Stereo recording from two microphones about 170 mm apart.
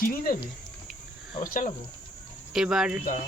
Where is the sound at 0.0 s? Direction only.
55° left (ahead or behind).